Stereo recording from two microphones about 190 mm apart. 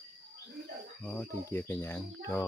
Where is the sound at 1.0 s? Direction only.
10° left (ahead or behind).